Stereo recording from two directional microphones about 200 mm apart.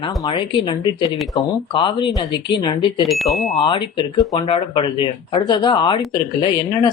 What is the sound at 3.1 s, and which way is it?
Speech, centre (ahead or behind).